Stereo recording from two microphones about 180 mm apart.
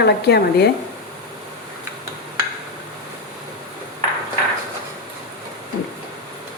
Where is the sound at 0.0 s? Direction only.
65° left (ahead or behind).